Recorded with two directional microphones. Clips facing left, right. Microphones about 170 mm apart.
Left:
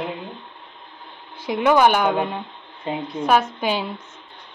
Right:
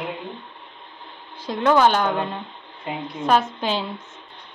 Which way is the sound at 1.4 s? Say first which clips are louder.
Left 1 dB; 10° left (ahead or behind).